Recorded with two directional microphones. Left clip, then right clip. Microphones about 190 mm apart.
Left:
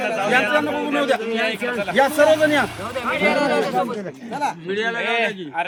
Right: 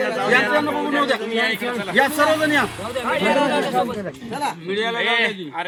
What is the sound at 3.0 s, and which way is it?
Speech, 30° right (ahead or behind).